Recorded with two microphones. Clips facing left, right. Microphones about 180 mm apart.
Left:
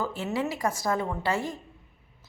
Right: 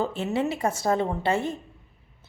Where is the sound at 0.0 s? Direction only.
25° right (ahead or behind).